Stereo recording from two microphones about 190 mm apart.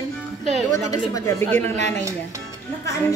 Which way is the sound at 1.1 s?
15° left (ahead or behind).